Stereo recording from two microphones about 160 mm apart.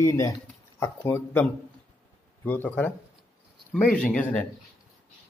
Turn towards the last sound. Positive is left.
turn(degrees=10)  # may be behind; listen again after turning